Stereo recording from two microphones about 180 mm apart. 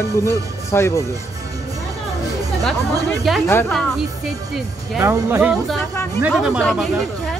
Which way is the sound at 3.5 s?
10° left (ahead or behind).